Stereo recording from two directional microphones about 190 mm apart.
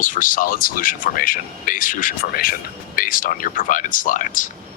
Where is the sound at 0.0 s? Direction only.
45° left (ahead or behind).